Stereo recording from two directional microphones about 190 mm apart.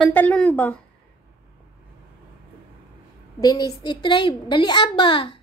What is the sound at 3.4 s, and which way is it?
A child's voice, 20° left (ahead or behind).